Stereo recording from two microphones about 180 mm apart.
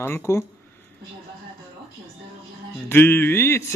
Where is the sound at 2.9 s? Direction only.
10° left (ahead or behind).